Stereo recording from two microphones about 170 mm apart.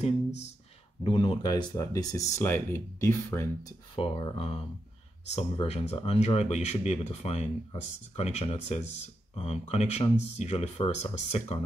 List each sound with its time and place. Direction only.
1.0 s speech: 30° left (ahead or behind)
3.9 s speech: 30° left (ahead or behind)